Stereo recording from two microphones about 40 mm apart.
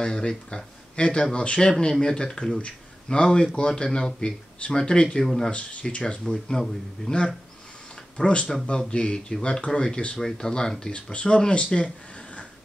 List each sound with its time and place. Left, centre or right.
0.0 s speech: left
5.2 s speech: centre
5.5 s speech: left
6.2 s speech: centre
8.2 s speech: left